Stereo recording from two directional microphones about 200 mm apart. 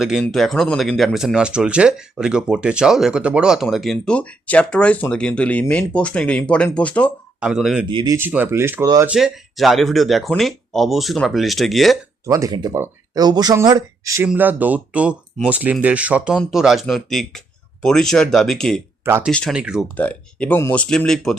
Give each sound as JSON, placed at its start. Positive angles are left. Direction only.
{"t": 0.0, "sound": "speech", "side_deg": 0}
{"t": 7.3, "sound": "speech", "side_deg": -5}
{"t": 7.9, "sound": "speech", "side_deg": -20}
{"t": 9.1, "sound": "speech", "side_deg": 0}
{"t": 12.2, "sound": "speech", "side_deg": -15}
{"t": 19.0, "sound": "speech", "side_deg": -10}
{"t": 19.3, "sound": "speech", "side_deg": 5}
{"t": 20.0, "sound": "speech", "side_deg": 5}